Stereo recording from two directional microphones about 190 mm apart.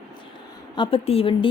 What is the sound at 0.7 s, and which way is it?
Speech, 30° left (ahead or behind).